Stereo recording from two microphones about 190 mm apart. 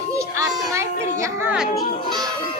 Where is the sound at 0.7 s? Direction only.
15° right (ahead or behind).